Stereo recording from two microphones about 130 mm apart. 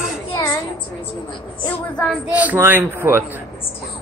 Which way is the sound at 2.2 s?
10° right (ahead or behind).